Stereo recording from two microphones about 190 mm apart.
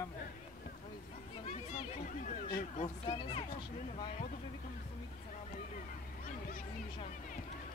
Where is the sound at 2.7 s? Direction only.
35° left (ahead or behind).